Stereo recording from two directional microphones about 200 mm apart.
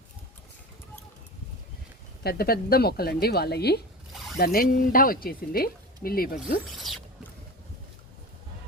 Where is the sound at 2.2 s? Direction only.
50° left (ahead or behind).